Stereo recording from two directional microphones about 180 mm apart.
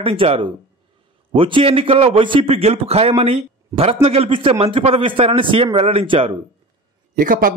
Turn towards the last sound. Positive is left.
turn(degrees=-50)  # may be behind; listen again after turning